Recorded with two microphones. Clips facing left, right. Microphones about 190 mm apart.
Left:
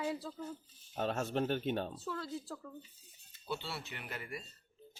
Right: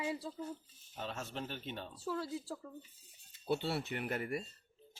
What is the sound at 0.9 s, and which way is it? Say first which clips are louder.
Speech: left 8 dB; 55° left (ahead or behind).